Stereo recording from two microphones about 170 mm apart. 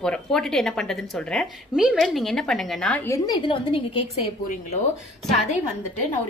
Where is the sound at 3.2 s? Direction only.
30° left (ahead or behind).